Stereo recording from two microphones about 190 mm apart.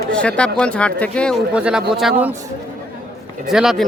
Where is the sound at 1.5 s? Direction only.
5° right (ahead or behind).